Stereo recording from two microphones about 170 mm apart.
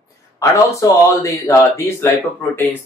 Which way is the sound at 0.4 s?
20° left (ahead or behind).